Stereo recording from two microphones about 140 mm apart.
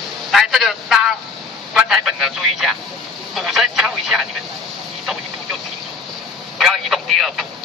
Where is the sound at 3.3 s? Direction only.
Centre (ahead or behind).